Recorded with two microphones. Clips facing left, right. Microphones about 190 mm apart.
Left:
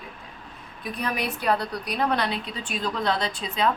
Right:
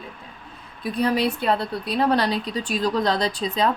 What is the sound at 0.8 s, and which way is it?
A woman's voice, 30° right (ahead or behind).